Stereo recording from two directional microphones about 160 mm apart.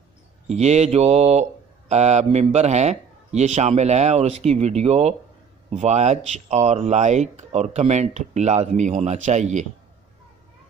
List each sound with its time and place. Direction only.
0.5 s speech: 45° right (ahead or behind)